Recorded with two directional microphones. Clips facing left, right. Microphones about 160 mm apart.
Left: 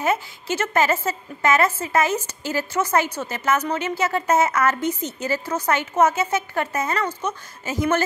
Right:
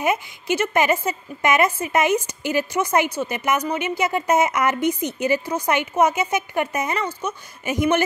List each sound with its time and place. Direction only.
0.0 s a woman's voice: 15° right (ahead or behind)